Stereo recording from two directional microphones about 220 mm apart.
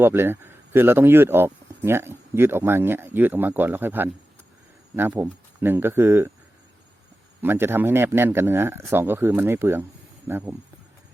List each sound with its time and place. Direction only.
0.0 s speech: 10° right (ahead or behind)
7.4 s speech: 10° right (ahead or behind)